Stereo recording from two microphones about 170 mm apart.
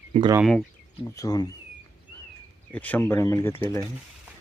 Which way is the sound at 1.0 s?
20° left (ahead or behind).